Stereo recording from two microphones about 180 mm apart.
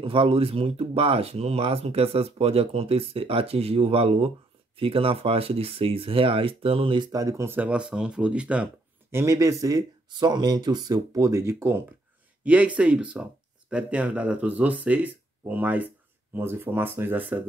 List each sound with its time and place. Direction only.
0.0 s speech: 30° right (ahead or behind); by 8.6 s 5° right (ahead or behind)
9.1 s speech: 15° right (ahead or behind)